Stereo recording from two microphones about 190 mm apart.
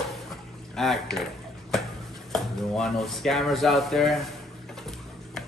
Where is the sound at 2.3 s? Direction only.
Centre (ahead or behind).